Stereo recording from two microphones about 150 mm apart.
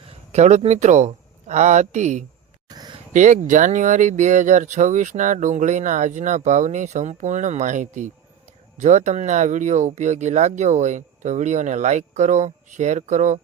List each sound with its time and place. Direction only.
0.3 s speech: 50° right (ahead or behind)
2.6 s a sound: 25° right (ahead or behind)
3.1 s speech: 55° right (ahead or behind)